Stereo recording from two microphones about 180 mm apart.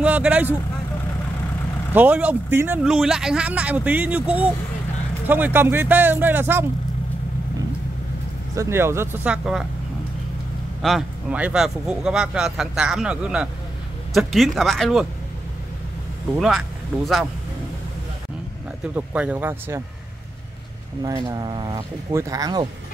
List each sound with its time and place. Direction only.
0.0 s speech: 5° right (ahead or behind)
2.0 s speech: 10° right (ahead or behind)
8.5 s speech: 15° right (ahead or behind)
10.8 s speech: centre (ahead or behind)
16.3 s speech: centre (ahead or behind)
18.9 s speech: 10° right (ahead or behind)
21.0 s speech: 20° right (ahead or behind)